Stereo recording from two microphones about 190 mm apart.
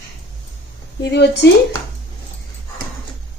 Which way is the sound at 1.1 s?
60° left (ahead or behind).